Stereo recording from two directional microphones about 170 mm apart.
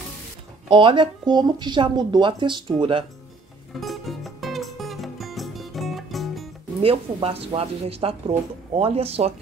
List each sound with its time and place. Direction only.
0.7 s speech: 30° right (ahead or behind)
3.8 s music: centre (ahead or behind)
6.8 s speech: 35° right (ahead or behind)